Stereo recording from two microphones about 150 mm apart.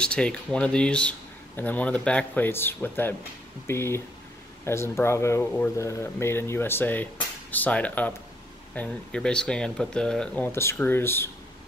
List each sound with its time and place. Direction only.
0.0 s speech: 5° left (ahead or behind)